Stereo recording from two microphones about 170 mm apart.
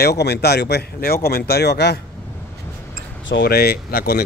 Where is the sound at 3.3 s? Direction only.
70° left (ahead or behind).